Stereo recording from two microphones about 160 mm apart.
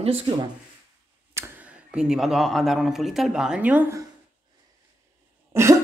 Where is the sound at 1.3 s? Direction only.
15° right (ahead or behind).